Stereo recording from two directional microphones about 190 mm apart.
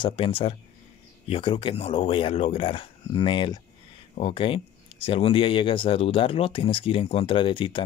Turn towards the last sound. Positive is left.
turn(degrees=25)  # may be behind; listen again after turning